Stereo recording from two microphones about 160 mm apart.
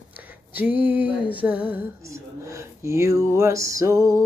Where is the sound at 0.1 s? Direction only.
10° right (ahead or behind).